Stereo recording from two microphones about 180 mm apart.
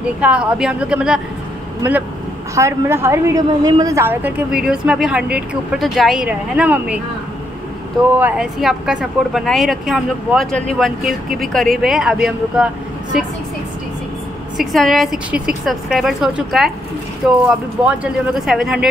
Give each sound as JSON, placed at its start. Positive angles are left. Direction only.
{"t": 0.2, "sound": "a woman's voice", "side_deg": -5}
{"t": 8.2, "sound": "speech", "side_deg": -5}
{"t": 14.6, "sound": "speech", "side_deg": 0}